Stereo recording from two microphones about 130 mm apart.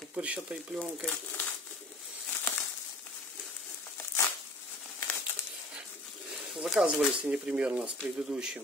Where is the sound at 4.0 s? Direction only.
20° left (ahead or behind).